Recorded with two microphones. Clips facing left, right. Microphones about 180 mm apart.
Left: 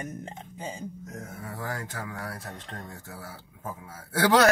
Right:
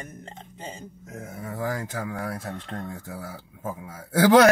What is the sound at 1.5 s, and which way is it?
Speech, 20° right (ahead or behind).